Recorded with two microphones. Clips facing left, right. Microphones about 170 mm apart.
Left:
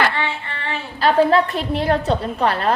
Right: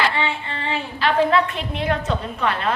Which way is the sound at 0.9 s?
40° left (ahead or behind).